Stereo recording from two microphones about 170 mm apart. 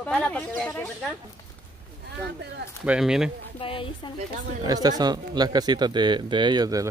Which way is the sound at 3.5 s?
30° left (ahead or behind).